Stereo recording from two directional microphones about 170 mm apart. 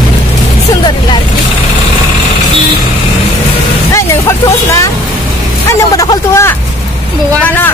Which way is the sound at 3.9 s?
15° left (ahead or behind).